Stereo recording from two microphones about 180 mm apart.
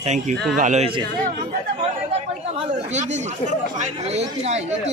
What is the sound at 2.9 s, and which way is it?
Speech, 40° right (ahead or behind).